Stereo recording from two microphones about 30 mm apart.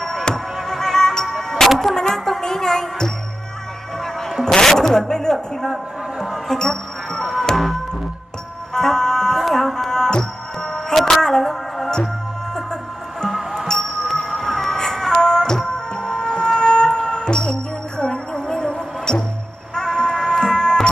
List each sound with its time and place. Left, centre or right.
0.3 s music: left
0.7 s music: centre
5.0 s speech: left
6.6 s music: centre
9.4 s music: centre
10.7 s music: centre
13.5 s music: centre